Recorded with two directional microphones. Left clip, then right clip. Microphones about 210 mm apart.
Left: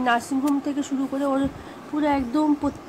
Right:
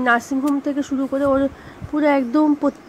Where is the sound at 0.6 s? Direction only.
15° right (ahead or behind).